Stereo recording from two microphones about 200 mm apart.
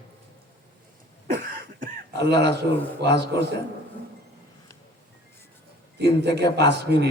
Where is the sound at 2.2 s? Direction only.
60° right (ahead or behind).